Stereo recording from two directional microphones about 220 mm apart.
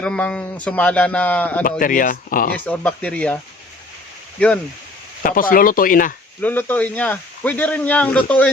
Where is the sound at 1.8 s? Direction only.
40° left (ahead or behind).